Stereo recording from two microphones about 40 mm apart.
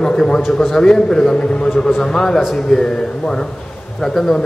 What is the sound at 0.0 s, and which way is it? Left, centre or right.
A man's voice, centre.